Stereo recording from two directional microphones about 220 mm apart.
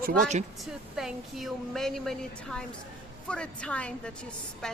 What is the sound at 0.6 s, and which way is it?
A woman's voice, centre (ahead or behind).